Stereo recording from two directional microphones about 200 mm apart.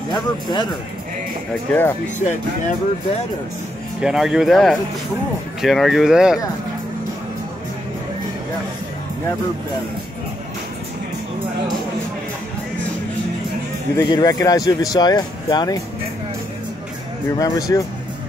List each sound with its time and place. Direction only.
0.1 s speech: 20° left (ahead or behind)
1.5 s speech: 10° left (ahead or behind)
2.2 s speech: 35° left (ahead or behind)
4.0 s speech: 5° right (ahead or behind)
13.9 s speech: 20° left (ahead or behind)
17.4 s speech: 15° left (ahead or behind)